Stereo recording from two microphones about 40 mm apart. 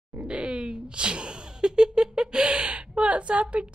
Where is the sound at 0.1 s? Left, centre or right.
Right.